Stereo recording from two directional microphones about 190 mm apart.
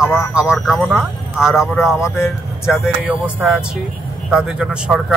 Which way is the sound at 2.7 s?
5° right (ahead or behind).